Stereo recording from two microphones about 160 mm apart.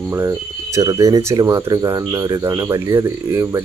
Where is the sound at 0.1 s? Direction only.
20° right (ahead or behind).